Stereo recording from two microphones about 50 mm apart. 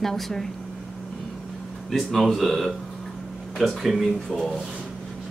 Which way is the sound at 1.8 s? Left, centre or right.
Centre.